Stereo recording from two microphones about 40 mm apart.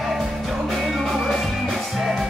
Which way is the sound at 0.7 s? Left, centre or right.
Centre.